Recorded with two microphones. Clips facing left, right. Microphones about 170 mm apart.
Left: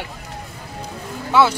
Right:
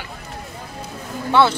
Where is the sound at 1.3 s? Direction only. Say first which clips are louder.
Even; 5° left (ahead or behind).